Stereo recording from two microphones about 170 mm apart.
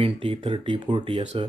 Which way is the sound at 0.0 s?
30° right (ahead or behind).